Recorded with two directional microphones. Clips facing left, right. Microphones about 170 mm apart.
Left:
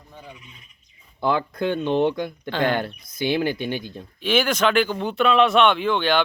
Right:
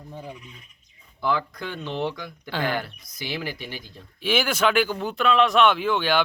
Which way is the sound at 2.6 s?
25° left (ahead or behind).